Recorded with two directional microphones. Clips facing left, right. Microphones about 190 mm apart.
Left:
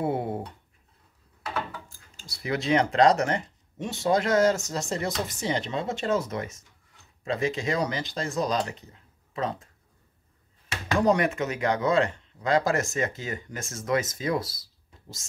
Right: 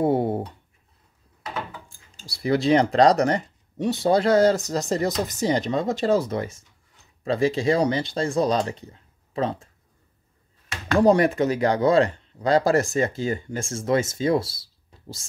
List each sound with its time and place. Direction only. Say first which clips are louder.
0.0 s a sound: right 7 dB; 35° right (ahead or behind)
2.2 s speech: right 7 dB; 35° right (ahead or behind)
11.0 s speech: right 6 dB; 35° right (ahead or behind)